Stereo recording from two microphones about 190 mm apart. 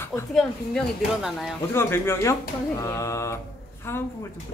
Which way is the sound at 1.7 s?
15° left (ahead or behind).